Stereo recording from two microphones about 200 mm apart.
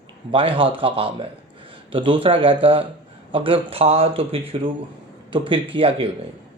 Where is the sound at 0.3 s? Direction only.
25° right (ahead or behind).